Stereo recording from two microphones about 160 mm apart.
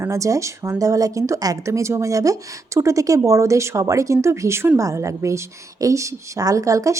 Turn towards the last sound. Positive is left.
turn(degrees=-20)  # may be behind; listen again after turning